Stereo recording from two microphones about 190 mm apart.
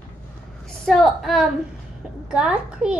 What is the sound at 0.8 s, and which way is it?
A child's voice, centre (ahead or behind).